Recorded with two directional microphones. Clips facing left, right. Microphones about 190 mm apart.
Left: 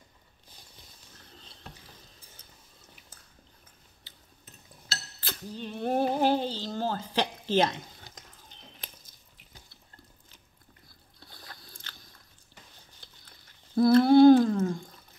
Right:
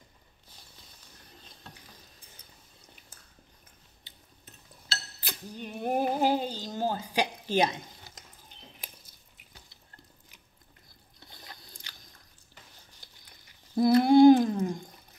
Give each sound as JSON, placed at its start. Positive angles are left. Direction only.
{"t": 5.2, "sound": "a sound", "side_deg": -15}
{"t": 11.1, "sound": "vehicle", "side_deg": -20}
{"t": 13.7, "sound": "humming", "side_deg": -15}